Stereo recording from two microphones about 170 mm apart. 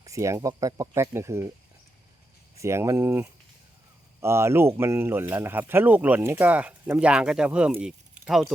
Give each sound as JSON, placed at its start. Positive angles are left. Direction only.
{"t": 0.0, "sound": "speech", "side_deg": -20}
{"t": 2.6, "sound": "speech", "side_deg": -15}